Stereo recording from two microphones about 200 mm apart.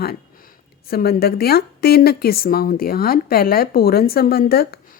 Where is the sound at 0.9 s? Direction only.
50° left (ahead or behind).